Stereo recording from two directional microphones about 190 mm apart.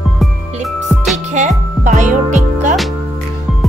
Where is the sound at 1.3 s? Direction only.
40° right (ahead or behind).